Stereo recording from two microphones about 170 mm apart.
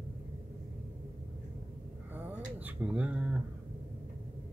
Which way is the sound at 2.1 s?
10° right (ahead or behind).